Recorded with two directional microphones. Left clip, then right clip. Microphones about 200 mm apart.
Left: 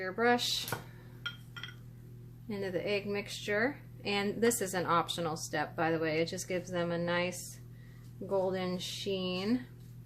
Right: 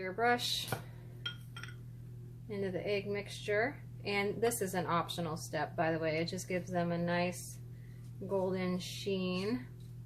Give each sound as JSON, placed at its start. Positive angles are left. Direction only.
{"t": 0.0, "sound": "speech", "side_deg": 30}
{"t": 2.5, "sound": "speech", "side_deg": 35}